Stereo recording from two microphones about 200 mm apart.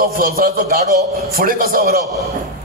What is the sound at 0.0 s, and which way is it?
A man's voice, 45° right (ahead or behind).